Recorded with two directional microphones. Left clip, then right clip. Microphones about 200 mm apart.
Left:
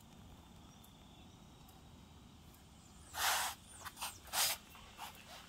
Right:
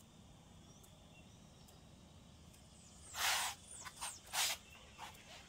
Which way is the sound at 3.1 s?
20° left (ahead or behind).